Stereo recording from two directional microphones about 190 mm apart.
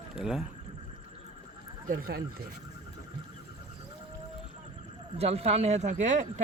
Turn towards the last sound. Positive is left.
turn(degrees=-40)  # may be behind; listen again after turning